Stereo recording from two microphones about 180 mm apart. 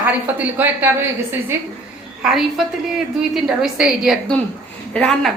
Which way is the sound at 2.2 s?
Centre (ahead or behind).